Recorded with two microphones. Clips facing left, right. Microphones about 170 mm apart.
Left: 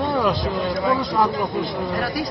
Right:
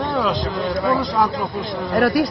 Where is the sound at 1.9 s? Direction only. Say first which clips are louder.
Right 12 dB; 65° right (ahead or behind).